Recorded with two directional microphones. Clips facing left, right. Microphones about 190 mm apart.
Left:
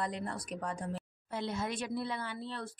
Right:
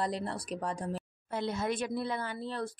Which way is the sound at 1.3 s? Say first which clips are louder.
Right 4 dB; 50° right (ahead or behind).